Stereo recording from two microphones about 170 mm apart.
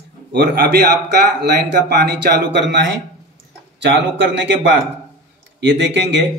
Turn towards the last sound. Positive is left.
turn(degrees=-90)